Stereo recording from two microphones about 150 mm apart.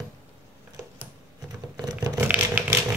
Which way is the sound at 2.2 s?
10° right (ahead or behind).